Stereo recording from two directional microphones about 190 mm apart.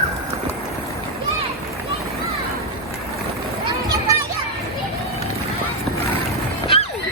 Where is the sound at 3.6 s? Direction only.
20° right (ahead or behind).